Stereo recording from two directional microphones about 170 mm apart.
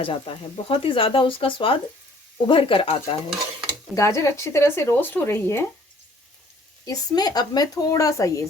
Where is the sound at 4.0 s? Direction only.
15° left (ahead or behind).